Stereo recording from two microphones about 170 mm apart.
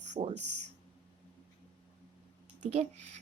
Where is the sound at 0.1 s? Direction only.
35° right (ahead or behind).